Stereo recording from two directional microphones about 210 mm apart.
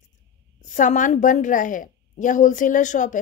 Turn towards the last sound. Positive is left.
turn(degrees=35)  # may be behind; listen again after turning